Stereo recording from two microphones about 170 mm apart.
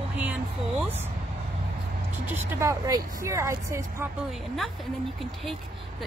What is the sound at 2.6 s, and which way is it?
Speech, 20° right (ahead or behind).